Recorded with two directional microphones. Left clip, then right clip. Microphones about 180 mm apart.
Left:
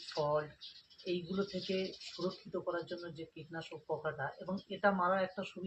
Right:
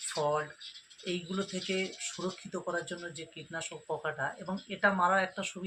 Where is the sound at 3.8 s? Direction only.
20° right (ahead or behind).